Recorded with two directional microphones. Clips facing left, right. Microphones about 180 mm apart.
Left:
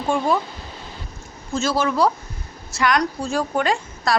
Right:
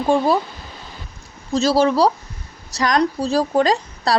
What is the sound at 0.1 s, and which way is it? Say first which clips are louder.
Speech: right 6 dB; 35° right (ahead or behind).